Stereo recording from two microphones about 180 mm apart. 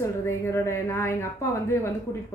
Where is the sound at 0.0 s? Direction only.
15° left (ahead or behind).